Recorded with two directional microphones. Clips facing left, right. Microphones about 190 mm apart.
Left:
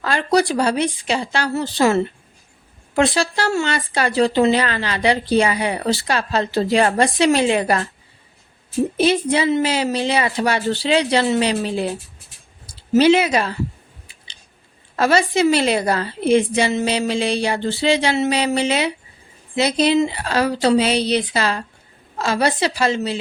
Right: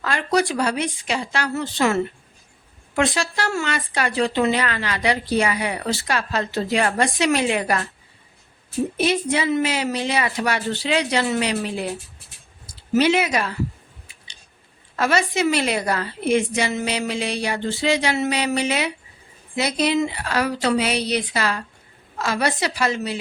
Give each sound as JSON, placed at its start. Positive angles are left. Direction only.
{"t": 0.0, "sound": "speech", "side_deg": 30}
{"t": 9.0, "sound": "a woman's voice", "side_deg": 30}
{"t": 12.9, "sound": "a woman's voice", "side_deg": 30}
{"t": 14.9, "sound": "a woman's voice", "side_deg": 30}